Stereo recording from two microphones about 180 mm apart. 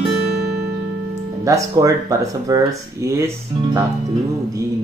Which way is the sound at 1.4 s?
20° right (ahead or behind).